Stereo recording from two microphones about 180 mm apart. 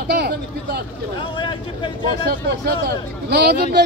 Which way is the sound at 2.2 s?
65° right (ahead or behind).